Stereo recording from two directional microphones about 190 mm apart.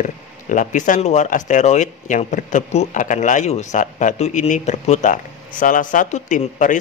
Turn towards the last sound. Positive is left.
turn(degrees=40)  # may be behind; listen again after turning